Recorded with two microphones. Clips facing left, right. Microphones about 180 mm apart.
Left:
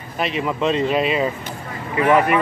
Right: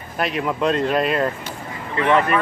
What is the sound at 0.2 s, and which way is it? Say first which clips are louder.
Speech: even; centre (ahead or behind).